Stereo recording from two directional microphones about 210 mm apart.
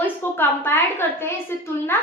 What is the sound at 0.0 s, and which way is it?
A woman's voice, 10° left (ahead or behind).